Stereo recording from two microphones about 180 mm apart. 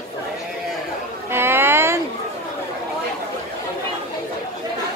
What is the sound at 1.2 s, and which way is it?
Speech, 15° right (ahead or behind).